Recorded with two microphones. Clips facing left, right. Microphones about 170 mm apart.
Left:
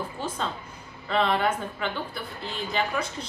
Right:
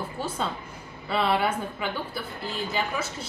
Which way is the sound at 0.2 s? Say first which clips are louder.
Right 2 dB; 10° right (ahead or behind).